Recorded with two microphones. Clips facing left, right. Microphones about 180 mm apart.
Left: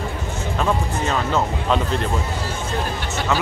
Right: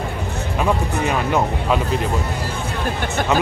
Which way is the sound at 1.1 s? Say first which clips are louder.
Right 1 dB; 15° right (ahead or behind).